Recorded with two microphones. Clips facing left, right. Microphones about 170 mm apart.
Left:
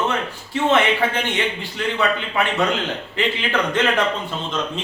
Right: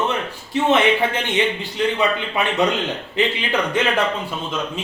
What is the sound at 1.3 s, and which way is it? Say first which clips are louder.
A man's voice: right 4 dB; 15° right (ahead or behind).